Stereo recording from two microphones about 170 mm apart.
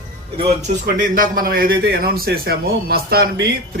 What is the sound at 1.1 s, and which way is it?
A man's voice, 55° right (ahead or behind).